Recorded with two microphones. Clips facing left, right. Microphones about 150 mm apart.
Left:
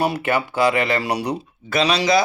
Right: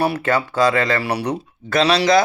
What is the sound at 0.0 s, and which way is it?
A man's voice, 15° left (ahead or behind).